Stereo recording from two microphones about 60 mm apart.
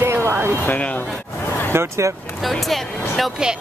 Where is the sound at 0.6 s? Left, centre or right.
Left.